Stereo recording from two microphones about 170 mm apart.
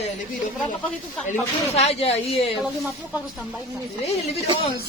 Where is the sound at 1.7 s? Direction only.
40° left (ahead or behind).